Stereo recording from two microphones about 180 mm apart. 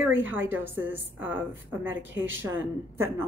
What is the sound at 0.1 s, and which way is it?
Speech, 90° right.